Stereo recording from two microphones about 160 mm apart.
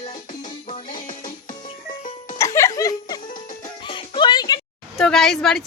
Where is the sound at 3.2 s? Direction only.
55° left (ahead or behind).